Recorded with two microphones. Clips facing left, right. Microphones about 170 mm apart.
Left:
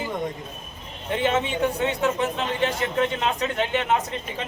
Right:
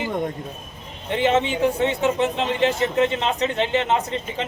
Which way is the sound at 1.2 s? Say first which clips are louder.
Right 4 dB; 25° right (ahead or behind).